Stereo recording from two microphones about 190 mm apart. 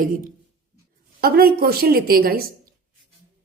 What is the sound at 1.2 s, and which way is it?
A woman's voice, 55° right (ahead or behind).